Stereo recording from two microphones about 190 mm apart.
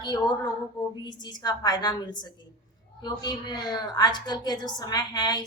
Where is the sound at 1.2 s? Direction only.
20° left (ahead or behind).